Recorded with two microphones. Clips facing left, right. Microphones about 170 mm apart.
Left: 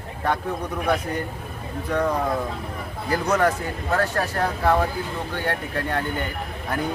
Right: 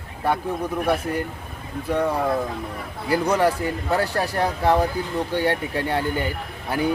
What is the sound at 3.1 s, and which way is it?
Speech, 10° right (ahead or behind).